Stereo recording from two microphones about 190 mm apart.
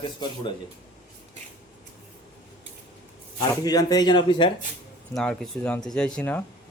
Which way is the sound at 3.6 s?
20° left (ahead or behind).